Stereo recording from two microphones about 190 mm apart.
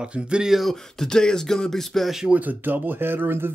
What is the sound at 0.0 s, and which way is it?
Speech, 5° right (ahead or behind).